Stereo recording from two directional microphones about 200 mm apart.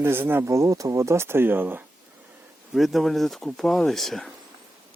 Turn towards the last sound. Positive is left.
turn(degrees=0)  # may be behind; listen again after turning